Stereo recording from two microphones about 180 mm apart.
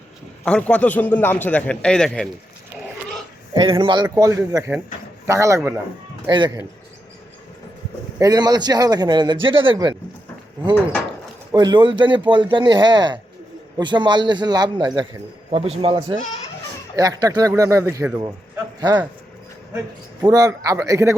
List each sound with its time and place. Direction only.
0.4 s a man's voice: 5° left (ahead or behind)
3.5 s a man's voice: 25° right (ahead or behind); by 5.8 s 10° right (ahead or behind)
6.2 s a man's voice: 25° right (ahead or behind)
8.2 s a man's voice: 20° right (ahead or behind)
11.5 s a man's voice: 25° right (ahead or behind)
15.4 s a man's voice: 35° right (ahead or behind)
16.9 s a man's voice: 20° right (ahead or behind)
20.2 s a man's voice: 20° right (ahead or behind)